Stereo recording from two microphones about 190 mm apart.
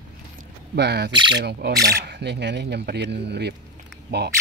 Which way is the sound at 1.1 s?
25° right (ahead or behind).